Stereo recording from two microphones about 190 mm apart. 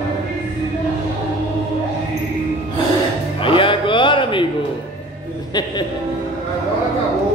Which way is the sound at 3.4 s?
25° left (ahead or behind).